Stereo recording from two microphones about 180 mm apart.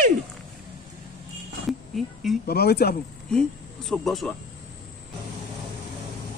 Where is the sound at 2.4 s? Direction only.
60° left (ahead or behind).